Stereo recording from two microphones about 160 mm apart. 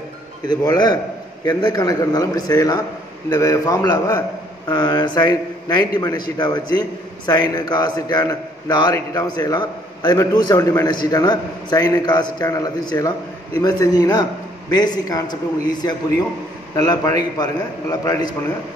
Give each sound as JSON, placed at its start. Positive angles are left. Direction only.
{"t": 0.5, "sound": "a man's voice", "side_deg": 25}
{"t": 16.7, "sound": "a man's voice", "side_deg": 20}